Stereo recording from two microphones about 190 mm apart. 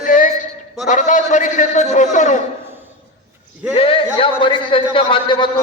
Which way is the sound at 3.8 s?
30° left (ahead or behind).